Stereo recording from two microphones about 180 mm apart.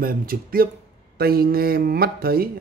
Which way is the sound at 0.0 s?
55° right (ahead or behind).